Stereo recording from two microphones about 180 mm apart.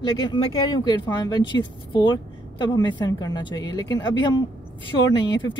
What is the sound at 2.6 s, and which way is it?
A woman's voice, 25° left (ahead or behind).